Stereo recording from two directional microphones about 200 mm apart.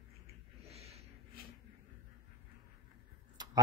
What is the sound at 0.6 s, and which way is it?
Snort, 30° right (ahead or behind).